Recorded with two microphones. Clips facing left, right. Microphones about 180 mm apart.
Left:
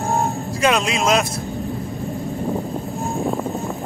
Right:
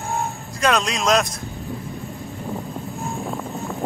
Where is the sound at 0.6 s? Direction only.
Centre (ahead or behind).